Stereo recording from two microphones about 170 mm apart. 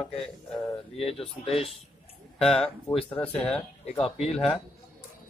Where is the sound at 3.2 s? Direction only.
10° left (ahead or behind).